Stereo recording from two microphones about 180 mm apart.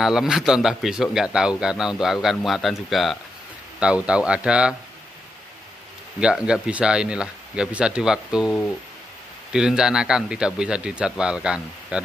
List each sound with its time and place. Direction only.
0.0 s speech: 5° right (ahead or behind)
6.1 s speech: 5° right (ahead or behind)